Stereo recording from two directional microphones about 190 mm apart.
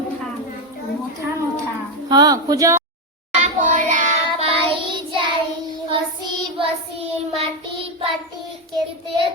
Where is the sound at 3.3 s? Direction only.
35° right (ahead or behind).